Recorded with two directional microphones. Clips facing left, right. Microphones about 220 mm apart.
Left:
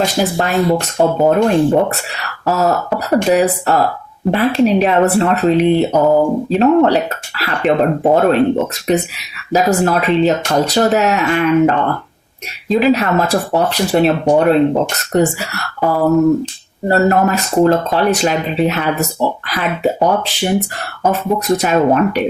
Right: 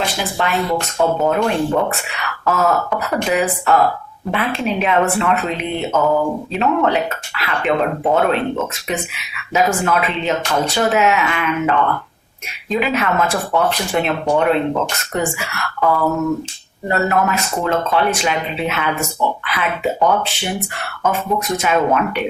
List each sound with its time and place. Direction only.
0.0 s speech: 40° left (ahead or behind)